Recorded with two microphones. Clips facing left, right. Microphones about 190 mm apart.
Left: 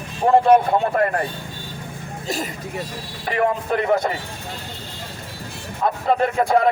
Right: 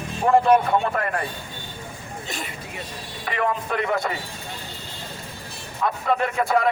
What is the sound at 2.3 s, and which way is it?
A man's voice, 40° left (ahead or behind).